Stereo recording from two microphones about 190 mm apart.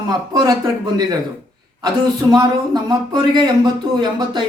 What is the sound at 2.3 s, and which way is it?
Speech, 20° right (ahead or behind).